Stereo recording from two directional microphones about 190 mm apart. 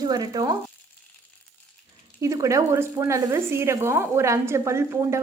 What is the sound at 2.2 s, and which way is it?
Speech, 15° right (ahead or behind).